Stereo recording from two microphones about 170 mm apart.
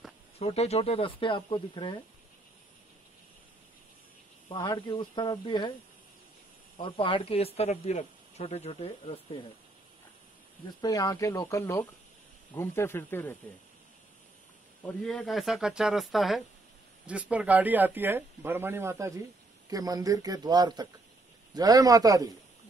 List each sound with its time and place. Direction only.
0.4 s speech: 35° left (ahead or behind)
4.5 s speech: 25° left (ahead or behind)
6.8 s speech: 30° left (ahead or behind)
10.8 s speech: 20° left (ahead or behind)
14.9 s speech: 5° left (ahead or behind); by 22.3 s 20° right (ahead or behind)